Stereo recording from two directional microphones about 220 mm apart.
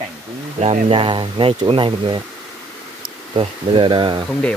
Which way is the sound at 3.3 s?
25° right (ahead or behind).